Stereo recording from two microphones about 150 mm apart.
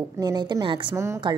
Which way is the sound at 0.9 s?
20° right (ahead or behind).